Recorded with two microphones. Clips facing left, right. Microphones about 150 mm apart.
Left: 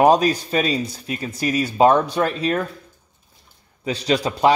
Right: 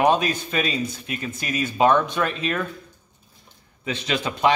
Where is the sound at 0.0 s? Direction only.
35° left (ahead or behind).